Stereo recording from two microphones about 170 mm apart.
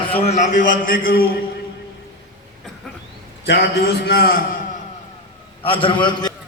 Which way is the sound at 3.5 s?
65° left (ahead or behind).